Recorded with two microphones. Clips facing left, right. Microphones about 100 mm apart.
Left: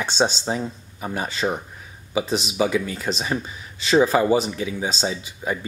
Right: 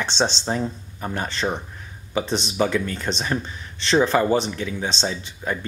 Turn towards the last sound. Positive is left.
turn(degrees=10)  # may be behind; listen again after turning